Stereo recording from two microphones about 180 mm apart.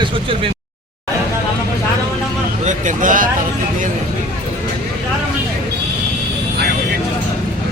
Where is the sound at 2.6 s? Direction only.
45° right (ahead or behind).